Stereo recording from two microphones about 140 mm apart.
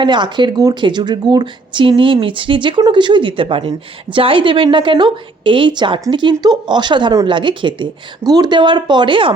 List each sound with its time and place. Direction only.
0.0 s speech: 35° right (ahead or behind)